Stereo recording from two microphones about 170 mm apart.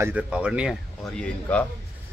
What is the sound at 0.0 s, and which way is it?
Speech, 5° right (ahead or behind).